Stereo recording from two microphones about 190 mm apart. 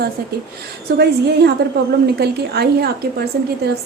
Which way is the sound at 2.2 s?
60° right (ahead or behind).